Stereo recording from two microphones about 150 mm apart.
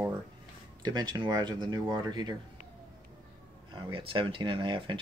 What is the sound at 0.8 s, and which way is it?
Speech, 30° right (ahead or behind).